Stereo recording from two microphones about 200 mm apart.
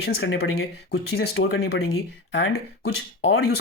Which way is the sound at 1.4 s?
70° left (ahead or behind).